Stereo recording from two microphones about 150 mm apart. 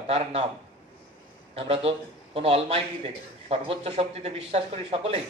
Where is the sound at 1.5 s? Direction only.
40° right (ahead or behind).